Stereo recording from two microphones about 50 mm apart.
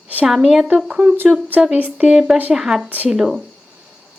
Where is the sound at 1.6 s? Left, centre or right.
Right.